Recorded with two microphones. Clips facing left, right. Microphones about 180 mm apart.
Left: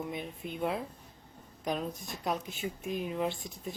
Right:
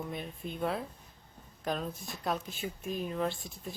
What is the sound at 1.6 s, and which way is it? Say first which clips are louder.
Speech: left 1 dB; 15° left (ahead or behind).